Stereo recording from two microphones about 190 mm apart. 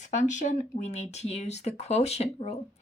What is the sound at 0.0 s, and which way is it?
Speech, 40° left (ahead or behind).